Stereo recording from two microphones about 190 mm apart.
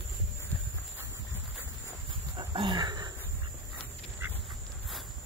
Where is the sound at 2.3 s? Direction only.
25° right (ahead or behind).